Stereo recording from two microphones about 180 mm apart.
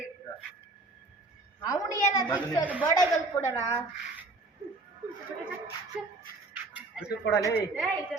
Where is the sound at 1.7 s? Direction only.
20° left (ahead or behind).